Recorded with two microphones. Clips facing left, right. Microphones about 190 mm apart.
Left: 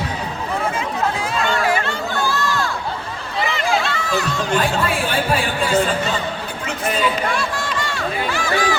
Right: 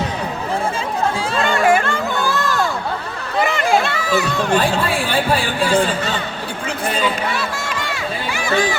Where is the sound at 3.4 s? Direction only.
50° right (ahead or behind).